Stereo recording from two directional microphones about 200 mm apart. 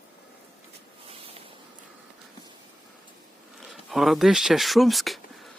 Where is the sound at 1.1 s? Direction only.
30° right (ahead or behind).